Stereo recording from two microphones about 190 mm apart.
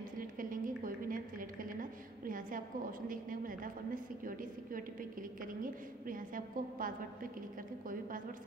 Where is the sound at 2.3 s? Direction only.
45° right (ahead or behind).